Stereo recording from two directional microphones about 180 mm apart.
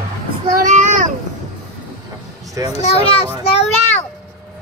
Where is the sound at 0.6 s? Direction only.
45° right (ahead or behind).